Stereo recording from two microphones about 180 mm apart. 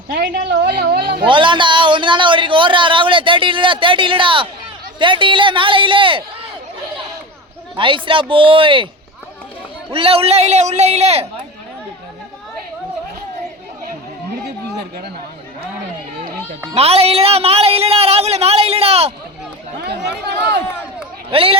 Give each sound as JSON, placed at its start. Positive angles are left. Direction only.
{"t": 0.1, "sound": "a woman's voice", "side_deg": -65}
{"t": 1.2, "sound": "a man's voice", "side_deg": -25}
{"t": 7.8, "sound": "a man's voice", "side_deg": -30}
{"t": 9.9, "sound": "speech", "side_deg": -30}
{"t": 16.7, "sound": "speech", "side_deg": -35}
{"t": 19.8, "sound": "speech", "side_deg": -65}
{"t": 21.2, "sound": "speech", "side_deg": -30}